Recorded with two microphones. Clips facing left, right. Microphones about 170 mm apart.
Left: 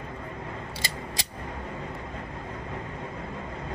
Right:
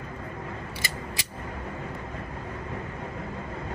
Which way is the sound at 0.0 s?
30° left (ahead or behind).